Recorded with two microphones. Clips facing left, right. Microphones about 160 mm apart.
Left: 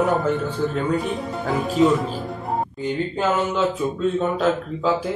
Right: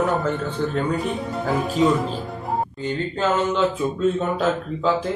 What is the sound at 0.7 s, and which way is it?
Speech, centre (ahead or behind).